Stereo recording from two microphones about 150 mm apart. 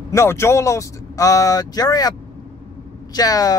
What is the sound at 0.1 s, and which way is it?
Speech, 15° left (ahead or behind).